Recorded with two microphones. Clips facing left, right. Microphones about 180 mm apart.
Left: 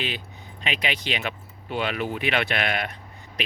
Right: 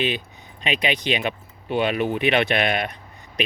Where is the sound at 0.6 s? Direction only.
20° right (ahead or behind).